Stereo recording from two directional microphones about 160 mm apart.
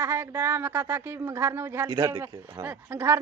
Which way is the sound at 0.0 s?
15° right (ahead or behind).